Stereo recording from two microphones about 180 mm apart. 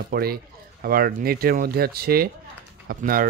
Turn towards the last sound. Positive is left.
turn(degrees=-55)  # may be behind; listen again after turning